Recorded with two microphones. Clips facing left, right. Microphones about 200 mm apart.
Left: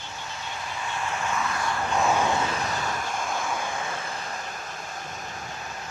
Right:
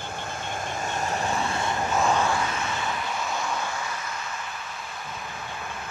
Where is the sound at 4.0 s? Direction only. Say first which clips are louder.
Left 1 dB; 35° left (ahead or behind).